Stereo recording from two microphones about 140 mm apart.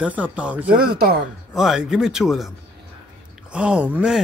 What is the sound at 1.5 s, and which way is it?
A man's voice, 5° right (ahead or behind).